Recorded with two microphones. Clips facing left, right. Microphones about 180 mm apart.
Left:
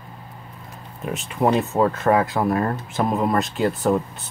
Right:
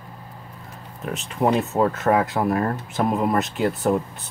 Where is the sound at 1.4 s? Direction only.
Centre (ahead or behind).